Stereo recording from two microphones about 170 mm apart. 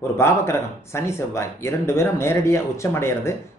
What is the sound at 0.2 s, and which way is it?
Speech, 15° left (ahead or behind).